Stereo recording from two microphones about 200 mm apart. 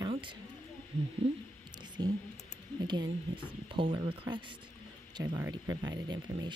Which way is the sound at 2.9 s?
25° right (ahead or behind).